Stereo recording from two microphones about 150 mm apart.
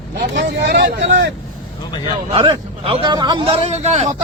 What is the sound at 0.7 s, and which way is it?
Speech, 60° right (ahead or behind).